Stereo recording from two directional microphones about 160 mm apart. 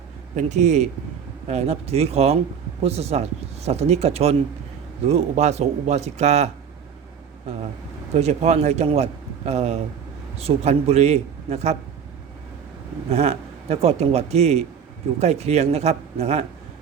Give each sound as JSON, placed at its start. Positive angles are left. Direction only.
{"t": 0.3, "sound": "speech", "side_deg": -45}
{"t": 8.1, "sound": "speech", "side_deg": -45}
{"t": 13.1, "sound": "speech", "side_deg": -40}